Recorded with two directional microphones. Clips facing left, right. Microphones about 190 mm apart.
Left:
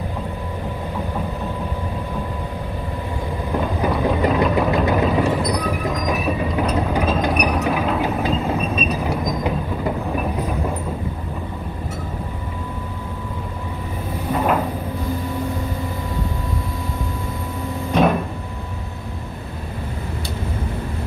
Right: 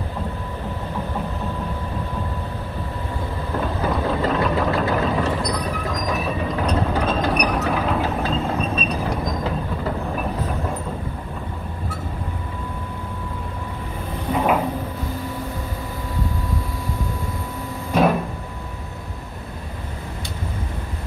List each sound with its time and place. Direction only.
3.5 s vehicle: 15° left (ahead or behind)
5.4 s train: 10° left (ahead or behind)
14.3 s a sound: 5° right (ahead or behind)
17.9 s cupboard open or close: 5° right (ahead or behind)